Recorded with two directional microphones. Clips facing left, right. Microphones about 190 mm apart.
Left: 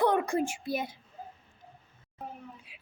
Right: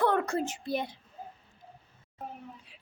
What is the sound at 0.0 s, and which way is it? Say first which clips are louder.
Speech: left 1 dB; 15° left (ahead or behind).